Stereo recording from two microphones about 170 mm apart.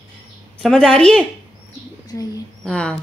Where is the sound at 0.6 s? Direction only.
5° left (ahead or behind).